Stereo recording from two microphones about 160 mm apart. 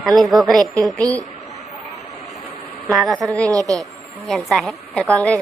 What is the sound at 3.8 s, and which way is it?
A woman's voice, centre (ahead or behind).